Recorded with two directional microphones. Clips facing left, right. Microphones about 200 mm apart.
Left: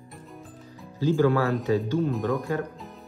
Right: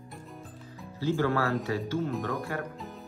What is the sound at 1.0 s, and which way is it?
Speech, 15° left (ahead or behind).